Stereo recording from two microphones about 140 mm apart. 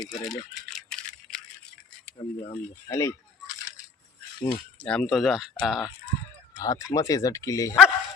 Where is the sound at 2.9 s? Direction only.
20° left (ahead or behind).